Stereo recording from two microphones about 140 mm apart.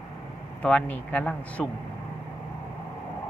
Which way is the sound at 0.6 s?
10° left (ahead or behind).